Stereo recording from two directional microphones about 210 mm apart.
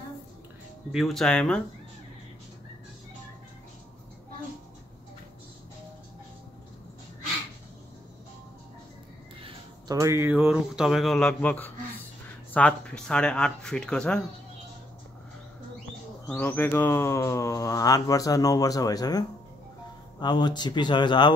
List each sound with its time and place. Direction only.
0.9 s speech: centre (ahead or behind)
9.4 s speech: 15° right (ahead or behind); by 14.2 s 5° left (ahead or behind)
16.3 s speech: 5° left (ahead or behind); by 21.3 s 20° left (ahead or behind)